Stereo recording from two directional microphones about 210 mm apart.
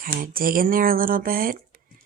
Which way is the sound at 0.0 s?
45° right (ahead or behind).